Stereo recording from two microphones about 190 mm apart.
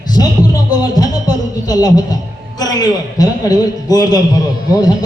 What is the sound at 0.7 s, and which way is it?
Speech, 20° left (ahead or behind).